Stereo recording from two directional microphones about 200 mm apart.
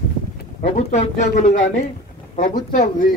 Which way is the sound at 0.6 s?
35° left (ahead or behind).